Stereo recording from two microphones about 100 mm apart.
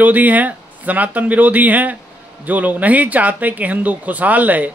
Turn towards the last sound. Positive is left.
turn(degrees=-15)  # may be behind; listen again after turning